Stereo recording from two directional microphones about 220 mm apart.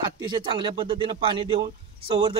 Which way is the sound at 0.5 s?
25° right (ahead or behind).